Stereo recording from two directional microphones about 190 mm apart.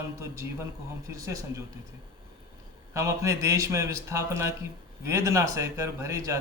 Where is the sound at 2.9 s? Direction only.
15° right (ahead or behind).